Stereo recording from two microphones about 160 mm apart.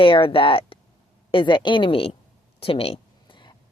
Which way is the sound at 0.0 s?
30° left (ahead or behind).